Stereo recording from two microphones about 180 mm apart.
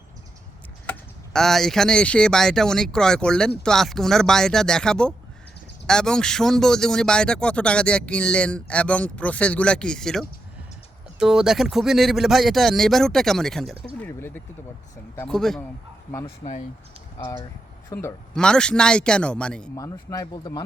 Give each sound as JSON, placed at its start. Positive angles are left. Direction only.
{"t": 0.9, "sound": "speech", "side_deg": 5}
{"t": 16.2, "sound": "speech", "side_deg": 35}
{"t": 17.9, "sound": "speech", "side_deg": 10}
{"t": 19.7, "sound": "speech", "side_deg": 20}